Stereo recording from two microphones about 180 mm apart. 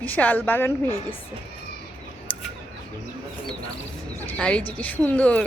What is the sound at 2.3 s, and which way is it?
Bird, 10° left (ahead or behind).